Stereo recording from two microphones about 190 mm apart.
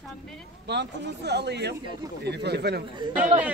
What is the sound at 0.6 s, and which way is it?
Speech, 60° right (ahead or behind).